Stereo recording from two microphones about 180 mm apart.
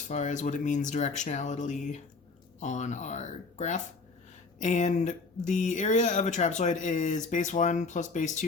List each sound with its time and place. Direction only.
0.1 s speech: 40° left (ahead or behind)